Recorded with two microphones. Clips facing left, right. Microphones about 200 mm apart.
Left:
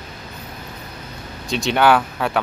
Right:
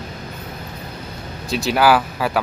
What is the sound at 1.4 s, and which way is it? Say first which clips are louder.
Speech: even; centre (ahead or behind).